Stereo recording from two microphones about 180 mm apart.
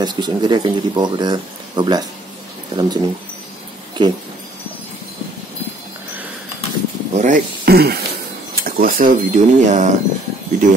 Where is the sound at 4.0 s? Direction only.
25° right (ahead or behind).